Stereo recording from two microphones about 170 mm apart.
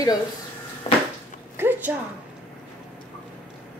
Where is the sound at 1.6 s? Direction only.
10° right (ahead or behind).